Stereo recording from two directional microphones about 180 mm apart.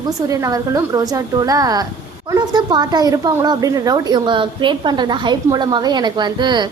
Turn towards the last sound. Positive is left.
turn(degrees=-25)  # may be behind; listen again after turning